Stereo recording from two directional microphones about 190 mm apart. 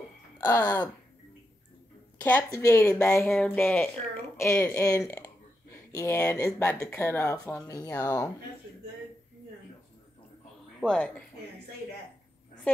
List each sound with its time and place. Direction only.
0.4 s a woman's voice: 15° left (ahead or behind)
2.2 s a woman's voice: 10° left (ahead or behind)
10.8 s speech: 5° left (ahead or behind)